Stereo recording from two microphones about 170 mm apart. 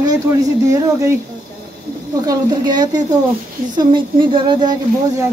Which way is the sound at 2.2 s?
25° right (ahead or behind).